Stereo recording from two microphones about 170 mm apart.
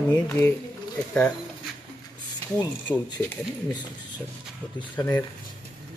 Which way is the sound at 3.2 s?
15° left (ahead or behind).